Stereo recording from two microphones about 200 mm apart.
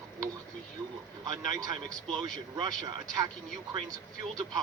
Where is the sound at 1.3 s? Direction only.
20° right (ahead or behind).